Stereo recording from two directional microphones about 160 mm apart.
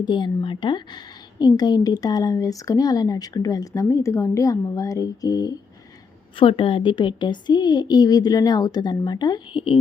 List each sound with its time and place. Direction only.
0.0 s a woman's voice: 30° left (ahead or behind)
6.3 s a woman's voice: 35° left (ahead or behind)